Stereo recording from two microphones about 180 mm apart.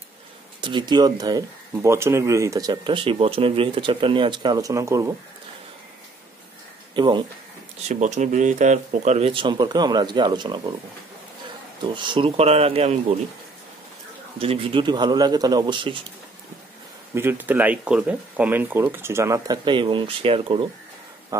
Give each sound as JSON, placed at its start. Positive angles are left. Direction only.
{"t": 0.6, "sound": "speech", "side_deg": -25}
{"t": 7.0, "sound": "speech", "side_deg": -25}
{"t": 7.9, "sound": "speech", "side_deg": -40}
{"t": 11.9, "sound": "speech", "side_deg": -25}
{"t": 14.4, "sound": "speech", "side_deg": -30}
{"t": 17.1, "sound": "speech", "side_deg": -10}
{"t": 21.3, "sound": "speech", "side_deg": -15}